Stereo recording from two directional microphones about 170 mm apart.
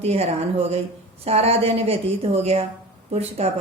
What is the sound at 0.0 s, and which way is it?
Speech, 40° right (ahead or behind).